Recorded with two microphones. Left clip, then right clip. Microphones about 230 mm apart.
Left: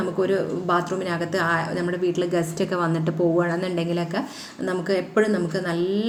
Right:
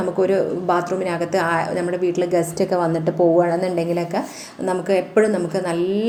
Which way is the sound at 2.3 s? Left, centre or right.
Centre.